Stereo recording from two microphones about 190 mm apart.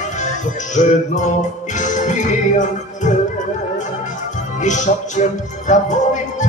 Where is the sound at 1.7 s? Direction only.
40° left (ahead or behind).